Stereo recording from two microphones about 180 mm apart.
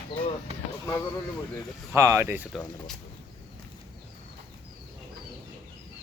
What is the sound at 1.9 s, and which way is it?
Speech, 15° right (ahead or behind).